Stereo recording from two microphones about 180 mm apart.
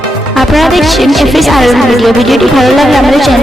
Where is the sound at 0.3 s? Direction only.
Centre (ahead or behind).